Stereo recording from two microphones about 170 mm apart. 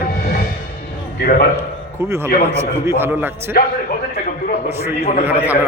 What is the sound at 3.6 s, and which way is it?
Speech, 65° left (ahead or behind).